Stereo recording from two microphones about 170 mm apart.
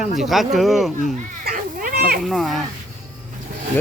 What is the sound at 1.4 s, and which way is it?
Goat, 55° right (ahead or behind).